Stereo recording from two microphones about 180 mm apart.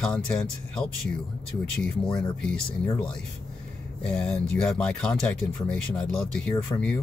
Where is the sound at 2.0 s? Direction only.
25° left (ahead or behind).